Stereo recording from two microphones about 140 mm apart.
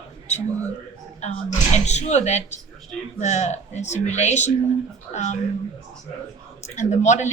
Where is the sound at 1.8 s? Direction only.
55° left (ahead or behind).